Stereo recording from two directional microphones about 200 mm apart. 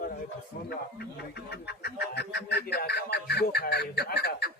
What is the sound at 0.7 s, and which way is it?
Speech, 55° left (ahead or behind).